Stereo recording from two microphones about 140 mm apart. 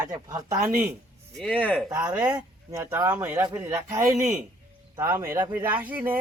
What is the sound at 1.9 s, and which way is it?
Speech, 10° right (ahead or behind).